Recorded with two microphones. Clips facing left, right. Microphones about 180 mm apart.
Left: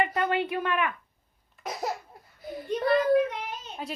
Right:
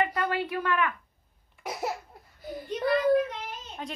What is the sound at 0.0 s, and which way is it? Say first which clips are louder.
Speech: left 2 dB; 25° left (ahead or behind).